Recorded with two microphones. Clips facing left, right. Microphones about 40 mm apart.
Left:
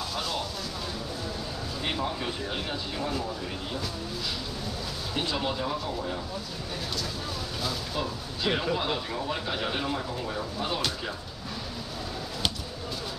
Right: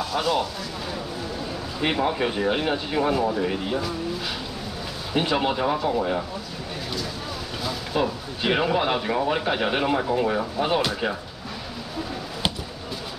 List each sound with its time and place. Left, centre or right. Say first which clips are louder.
0.1 s speech: right 11 dB; right
1.8 s speech: right 9 dB; right
5.1 s speech: right 8 dB; right
7.9 s speech: right 7 dB; right